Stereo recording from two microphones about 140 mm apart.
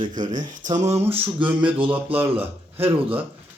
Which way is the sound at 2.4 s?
15° right (ahead or behind).